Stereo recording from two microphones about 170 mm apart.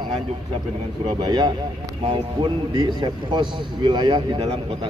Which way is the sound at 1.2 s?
25° right (ahead or behind).